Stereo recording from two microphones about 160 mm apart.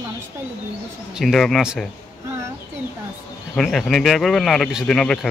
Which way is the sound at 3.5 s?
Centre (ahead or behind).